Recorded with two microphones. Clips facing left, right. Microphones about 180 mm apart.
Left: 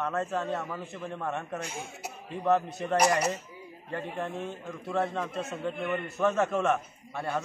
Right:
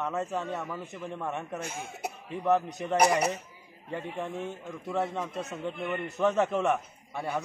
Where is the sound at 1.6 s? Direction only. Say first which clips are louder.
Right 2 dB; 55° right (ahead or behind).